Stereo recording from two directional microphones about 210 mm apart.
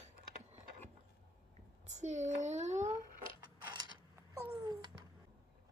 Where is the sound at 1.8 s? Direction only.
35° right (ahead or behind).